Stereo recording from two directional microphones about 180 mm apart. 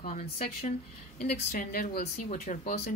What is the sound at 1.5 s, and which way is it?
Speech, 50° left (ahead or behind).